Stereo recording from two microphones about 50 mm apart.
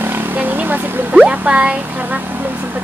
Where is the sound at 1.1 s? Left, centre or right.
Right.